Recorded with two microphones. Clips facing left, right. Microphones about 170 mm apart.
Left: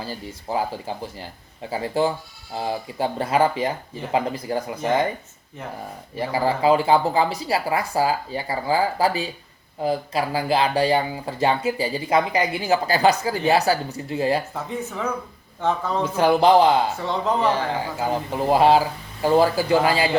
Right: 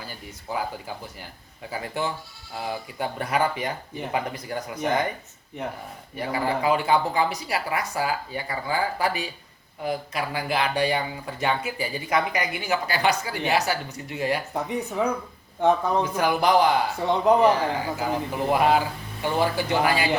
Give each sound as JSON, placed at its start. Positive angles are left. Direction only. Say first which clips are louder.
{"t": 0.0, "sound": "speech", "louder": "left 7 dB", "side_deg": 30}
{"t": 6.1, "sound": "speech", "louder": "left 3 dB", "side_deg": 30}
{"t": 14.5, "sound": "speech", "louder": "right 2 dB", "side_deg": -15}
{"t": 16.0, "sound": "speech", "louder": "left 10 dB", "side_deg": 25}
{"t": 17.1, "sound": "speech", "louder": "right 7 dB", "side_deg": -15}
{"t": 18.0, "sound": "speech", "louder": "left 4 dB", "side_deg": 25}